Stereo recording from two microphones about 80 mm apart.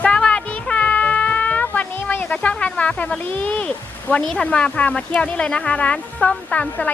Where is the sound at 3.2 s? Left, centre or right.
Centre.